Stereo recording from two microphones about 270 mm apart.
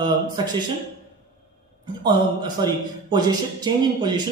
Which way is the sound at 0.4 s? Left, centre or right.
Centre.